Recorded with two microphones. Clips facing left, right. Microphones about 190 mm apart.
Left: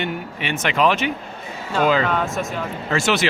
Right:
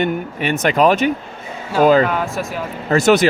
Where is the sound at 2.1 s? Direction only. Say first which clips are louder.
Right 1 dB; 5° right (ahead or behind).